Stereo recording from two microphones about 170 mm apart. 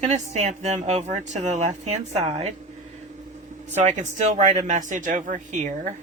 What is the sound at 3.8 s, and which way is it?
Speech, 45° right (ahead or behind).